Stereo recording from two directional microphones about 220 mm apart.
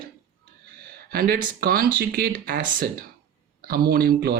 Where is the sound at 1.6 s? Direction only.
40° right (ahead or behind).